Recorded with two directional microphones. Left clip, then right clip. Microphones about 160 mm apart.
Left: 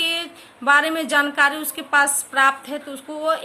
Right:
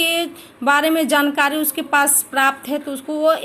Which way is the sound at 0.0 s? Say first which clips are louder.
Right 4 dB; 30° right (ahead or behind).